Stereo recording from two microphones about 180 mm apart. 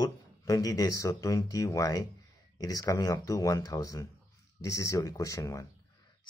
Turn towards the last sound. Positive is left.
turn(degrees=15)  # may be behind; listen again after turning